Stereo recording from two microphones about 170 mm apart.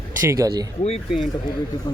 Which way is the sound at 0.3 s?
20° right (ahead or behind).